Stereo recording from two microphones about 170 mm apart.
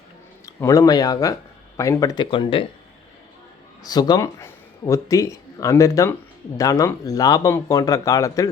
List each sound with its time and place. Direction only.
0.4 s speech: 20° left (ahead or behind)
3.8 s speech: 25° left (ahead or behind)